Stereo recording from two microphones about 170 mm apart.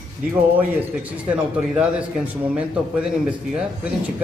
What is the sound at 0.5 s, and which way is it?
Speech, 10° right (ahead or behind).